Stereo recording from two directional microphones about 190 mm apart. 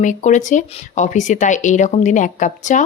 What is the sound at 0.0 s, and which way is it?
Speech, 40° left (ahead or behind).